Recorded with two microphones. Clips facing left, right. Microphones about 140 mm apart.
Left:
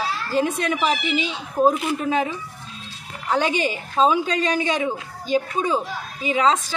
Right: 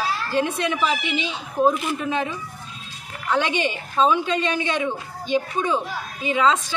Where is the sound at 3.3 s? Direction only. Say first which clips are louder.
Left 1 dB; 40° left (ahead or behind).